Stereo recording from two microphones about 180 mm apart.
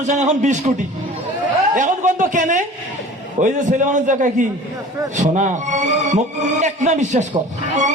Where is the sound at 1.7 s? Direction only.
45° right (ahead or behind).